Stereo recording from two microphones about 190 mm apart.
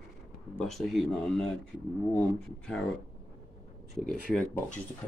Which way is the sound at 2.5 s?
Centre (ahead or behind).